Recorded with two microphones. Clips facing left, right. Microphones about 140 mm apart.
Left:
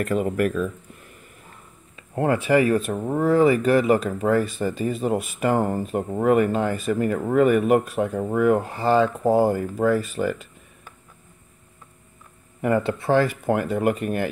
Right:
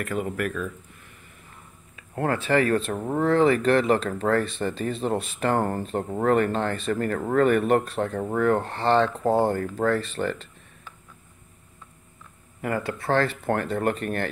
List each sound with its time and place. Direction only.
0.0 s speech: 35° left (ahead or behind)
2.0 s speech: 20° left (ahead or behind)
12.6 s speech: 25° left (ahead or behind)